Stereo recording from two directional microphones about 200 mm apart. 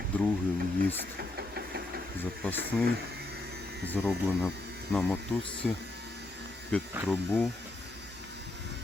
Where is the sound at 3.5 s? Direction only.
55° right (ahead or behind).